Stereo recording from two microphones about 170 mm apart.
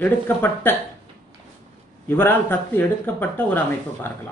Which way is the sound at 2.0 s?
10° left (ahead or behind).